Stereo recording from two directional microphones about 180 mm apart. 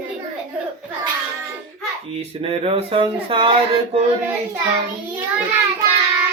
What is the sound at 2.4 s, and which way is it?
Speech, 30° right (ahead or behind).